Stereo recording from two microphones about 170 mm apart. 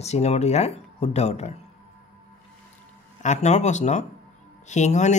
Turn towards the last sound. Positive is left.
turn(degrees=45)  # may be behind; listen again after turning